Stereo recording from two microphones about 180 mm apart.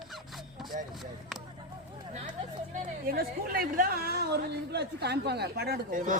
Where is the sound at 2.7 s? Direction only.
55° right (ahead or behind).